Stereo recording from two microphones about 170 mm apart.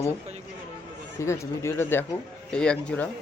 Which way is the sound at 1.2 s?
15° left (ahead or behind).